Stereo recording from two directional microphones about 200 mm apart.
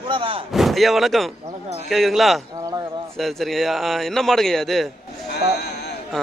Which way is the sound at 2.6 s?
20° right (ahead or behind).